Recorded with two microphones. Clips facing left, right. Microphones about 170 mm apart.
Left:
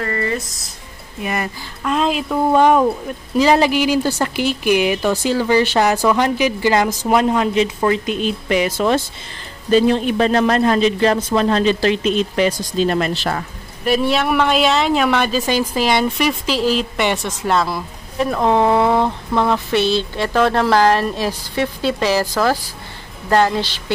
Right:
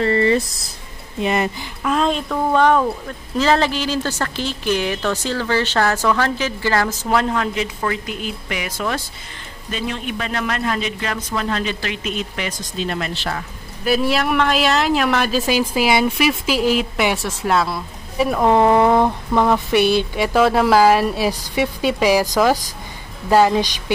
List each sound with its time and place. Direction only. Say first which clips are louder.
0.0 s speech: right 6 dB; 25° right (ahead or behind)
1.8 s a man's voice: left 1 dB; centre (ahead or behind); by 13.1 s 40° left (ahead or behind)
13.8 s a woman's voice: left 1 dB; centre (ahead or behind)